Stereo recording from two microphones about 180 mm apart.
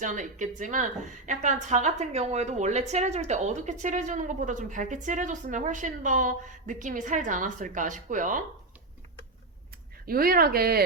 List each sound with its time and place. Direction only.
0.0 s a woman's voice: 45° right (ahead or behind)
10.1 s speech: 55° right (ahead or behind)